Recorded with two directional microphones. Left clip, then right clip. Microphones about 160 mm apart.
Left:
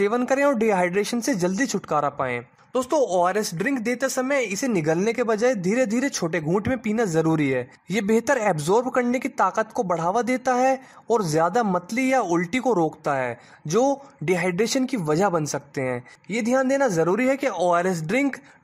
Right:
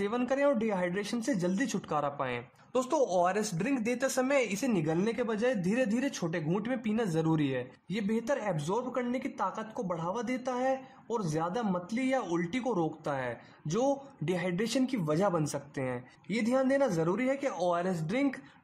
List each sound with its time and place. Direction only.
0.0 s speech: 40° left (ahead or behind)
4.8 s speech: 40° left (ahead or behind)